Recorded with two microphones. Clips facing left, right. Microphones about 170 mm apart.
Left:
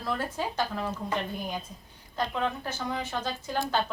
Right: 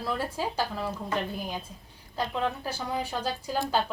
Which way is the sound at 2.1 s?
5° right (ahead or behind).